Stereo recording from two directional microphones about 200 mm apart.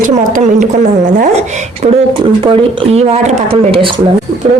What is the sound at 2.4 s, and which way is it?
Speech, 30° right (ahead or behind).